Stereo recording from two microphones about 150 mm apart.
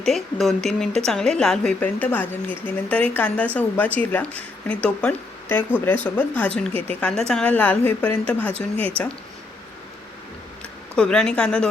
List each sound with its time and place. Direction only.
0.0 s a woman's voice: centre (ahead or behind)
8.5 s speech: 40° right (ahead or behind)
10.9 s speech: 5° left (ahead or behind)